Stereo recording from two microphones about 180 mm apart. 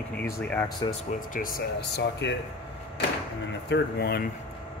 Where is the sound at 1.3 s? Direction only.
50° left (ahead or behind); by 2.3 s 70° left (ahead or behind).